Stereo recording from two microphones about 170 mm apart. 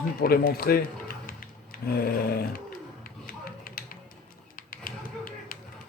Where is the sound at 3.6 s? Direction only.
55° left (ahead or behind).